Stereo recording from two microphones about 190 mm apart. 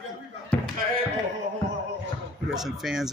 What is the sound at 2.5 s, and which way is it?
Speech, centre (ahead or behind).